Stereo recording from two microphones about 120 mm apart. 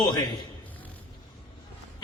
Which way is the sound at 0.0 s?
35° left (ahead or behind).